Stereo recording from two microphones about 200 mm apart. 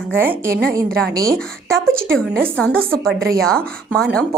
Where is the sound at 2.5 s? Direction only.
5° left (ahead or behind).